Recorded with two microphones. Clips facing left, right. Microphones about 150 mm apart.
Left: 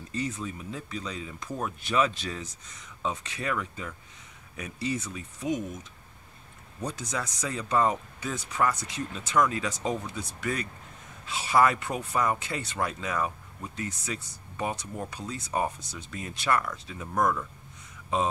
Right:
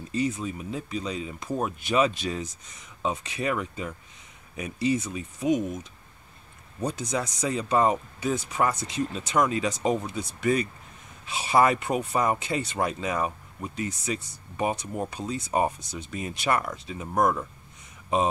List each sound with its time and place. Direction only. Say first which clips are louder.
0.1 s speech: right 5 dB; 15° right (ahead or behind)
6.8 s speech: right 5 dB; 15° right (ahead or behind)